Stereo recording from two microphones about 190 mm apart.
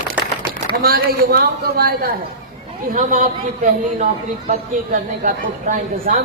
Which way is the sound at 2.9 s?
45° right (ahead or behind).